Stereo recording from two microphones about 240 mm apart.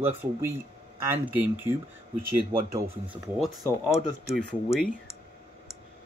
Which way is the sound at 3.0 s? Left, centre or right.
Centre.